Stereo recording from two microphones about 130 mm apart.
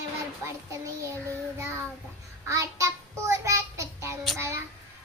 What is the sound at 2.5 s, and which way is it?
Child singing, 20° right (ahead or behind).